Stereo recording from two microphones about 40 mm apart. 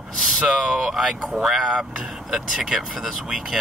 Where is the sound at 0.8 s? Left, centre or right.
Centre.